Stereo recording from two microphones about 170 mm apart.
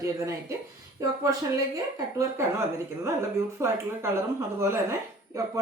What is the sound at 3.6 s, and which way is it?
A woman's voice, 15° right (ahead or behind).